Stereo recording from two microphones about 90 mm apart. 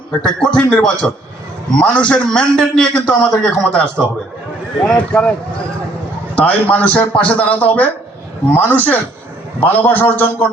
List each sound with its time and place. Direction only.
0.2 s a man's voice: 5° left (ahead or behind)
6.3 s a man's voice: 15° left (ahead or behind)